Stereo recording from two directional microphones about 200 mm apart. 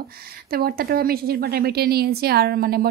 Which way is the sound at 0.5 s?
50° right (ahead or behind).